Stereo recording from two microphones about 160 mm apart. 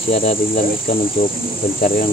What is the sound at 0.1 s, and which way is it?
Cricket, 40° left (ahead or behind).